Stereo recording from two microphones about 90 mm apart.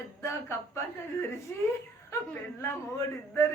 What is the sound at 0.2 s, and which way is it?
A man's voice, 30° left (ahead or behind).